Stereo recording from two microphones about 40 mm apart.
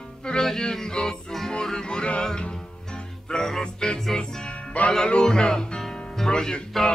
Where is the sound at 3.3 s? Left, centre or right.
Centre.